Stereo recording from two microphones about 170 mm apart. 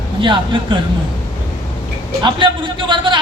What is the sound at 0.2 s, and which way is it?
Speech, 30° right (ahead or behind).